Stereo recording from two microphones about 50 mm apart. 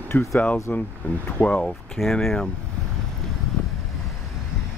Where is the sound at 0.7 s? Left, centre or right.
Left.